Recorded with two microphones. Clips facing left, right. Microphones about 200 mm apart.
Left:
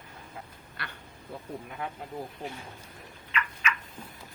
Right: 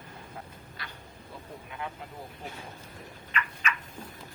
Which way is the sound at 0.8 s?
60° left (ahead or behind).